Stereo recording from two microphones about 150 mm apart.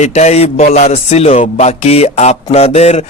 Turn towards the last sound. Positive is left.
turn(degrees=45)  # may be behind; listen again after turning